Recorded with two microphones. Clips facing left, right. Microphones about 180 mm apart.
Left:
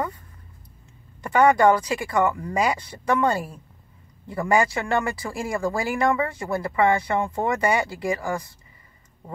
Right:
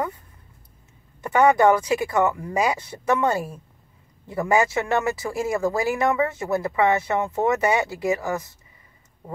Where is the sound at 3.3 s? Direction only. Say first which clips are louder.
Right 1 dB; 20° right (ahead or behind).